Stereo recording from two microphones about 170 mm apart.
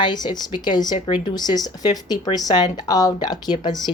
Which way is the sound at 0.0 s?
25° left (ahead or behind).